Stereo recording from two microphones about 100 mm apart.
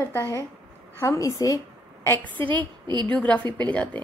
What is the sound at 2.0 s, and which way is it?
Speech, 20° left (ahead or behind).